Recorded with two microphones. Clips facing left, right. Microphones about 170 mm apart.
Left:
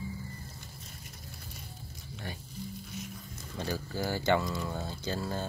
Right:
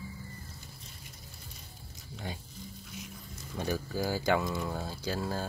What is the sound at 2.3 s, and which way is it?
Speech, 15° right (ahead or behind).